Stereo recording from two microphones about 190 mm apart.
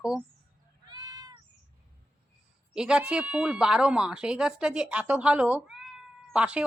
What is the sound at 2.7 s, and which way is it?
Speech, 5° right (ahead or behind).